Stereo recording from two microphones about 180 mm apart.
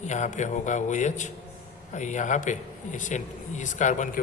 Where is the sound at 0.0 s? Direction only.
40° left (ahead or behind).